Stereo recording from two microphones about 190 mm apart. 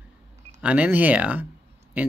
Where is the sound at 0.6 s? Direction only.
10° right (ahead or behind).